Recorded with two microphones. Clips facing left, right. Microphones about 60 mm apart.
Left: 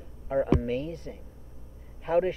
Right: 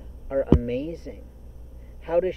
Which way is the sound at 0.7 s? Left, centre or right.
Right.